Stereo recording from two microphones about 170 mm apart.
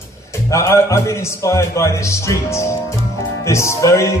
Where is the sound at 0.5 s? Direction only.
15° left (ahead or behind).